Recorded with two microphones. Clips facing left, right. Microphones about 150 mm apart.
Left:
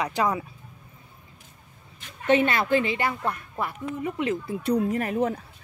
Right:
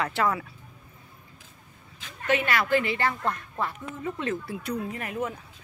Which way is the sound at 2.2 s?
25° left (ahead or behind).